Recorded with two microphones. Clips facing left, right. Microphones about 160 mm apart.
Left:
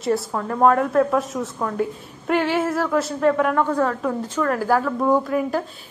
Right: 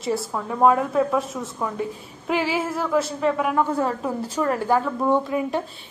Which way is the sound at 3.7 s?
30° right (ahead or behind).